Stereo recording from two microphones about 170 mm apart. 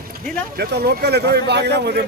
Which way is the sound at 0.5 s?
70° right (ahead or behind).